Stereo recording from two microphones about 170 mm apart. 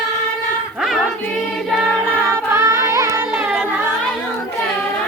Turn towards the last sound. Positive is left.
turn(degrees=-5)  # may be behind; listen again after turning